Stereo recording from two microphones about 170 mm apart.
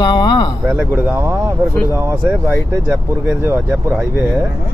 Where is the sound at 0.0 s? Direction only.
25° left (ahead or behind).